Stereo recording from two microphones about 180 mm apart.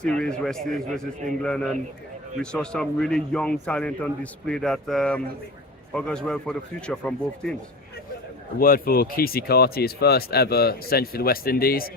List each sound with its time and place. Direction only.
0.0 s a man's voice: 5° left (ahead or behind)
8.5 s speech: 55° left (ahead or behind)